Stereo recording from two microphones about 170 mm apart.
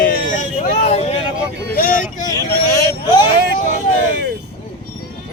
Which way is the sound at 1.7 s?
55° left (ahead or behind).